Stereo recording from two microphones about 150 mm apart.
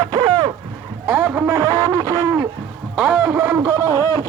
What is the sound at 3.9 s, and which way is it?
Speech, 20° left (ahead or behind).